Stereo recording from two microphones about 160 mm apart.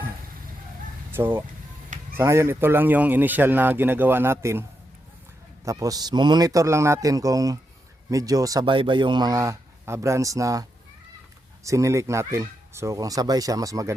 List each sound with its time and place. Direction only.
1.1 s speech: 15° right (ahead or behind)
5.6 s speech: 20° right (ahead or behind)